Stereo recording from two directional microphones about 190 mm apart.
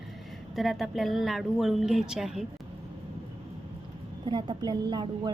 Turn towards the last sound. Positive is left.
turn(degrees=-20)  # may be behind; listen again after turning